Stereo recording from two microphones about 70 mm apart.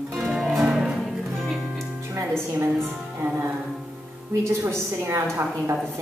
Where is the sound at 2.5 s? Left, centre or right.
Right.